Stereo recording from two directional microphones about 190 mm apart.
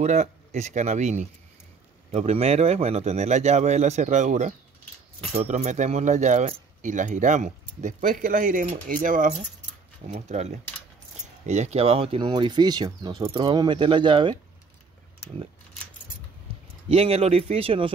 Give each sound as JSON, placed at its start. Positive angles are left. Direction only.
{"t": 0.0, "sound": "speech", "side_deg": -35}
{"t": 16.9, "sound": "speech", "side_deg": -30}